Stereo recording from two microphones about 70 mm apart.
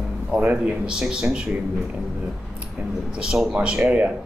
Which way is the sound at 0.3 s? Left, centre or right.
Centre.